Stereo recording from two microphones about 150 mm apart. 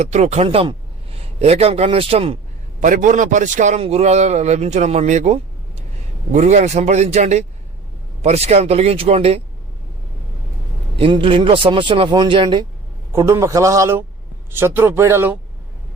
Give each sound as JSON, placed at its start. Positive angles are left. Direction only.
{"t": 0.0, "sound": "a man's voice", "side_deg": -50}
{"t": 2.8, "sound": "a man's voice", "side_deg": -60}
{"t": 11.0, "sound": "speech", "side_deg": -35}
{"t": 13.1, "sound": "a man's voice", "side_deg": -20}